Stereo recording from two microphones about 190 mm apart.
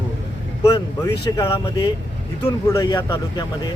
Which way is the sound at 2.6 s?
15° left (ahead or behind).